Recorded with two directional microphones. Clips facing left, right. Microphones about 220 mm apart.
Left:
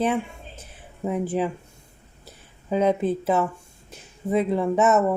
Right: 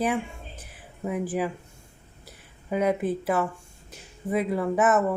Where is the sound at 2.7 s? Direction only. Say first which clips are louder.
Left 3 dB; 25° left (ahead or behind).